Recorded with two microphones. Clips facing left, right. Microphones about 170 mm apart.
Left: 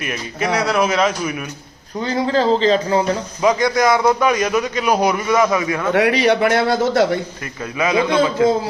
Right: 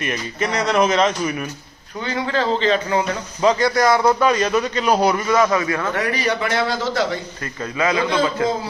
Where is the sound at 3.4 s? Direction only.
10° left (ahead or behind).